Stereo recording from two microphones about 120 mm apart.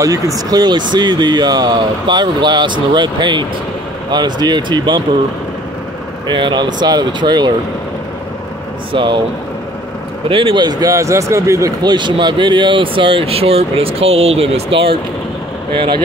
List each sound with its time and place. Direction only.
0.0 s speech: 30° right (ahead or behind)
6.2 s speech: 40° right (ahead or behind)
8.9 s speech: 40° right (ahead or behind)
10.2 s speech: 50° right (ahead or behind)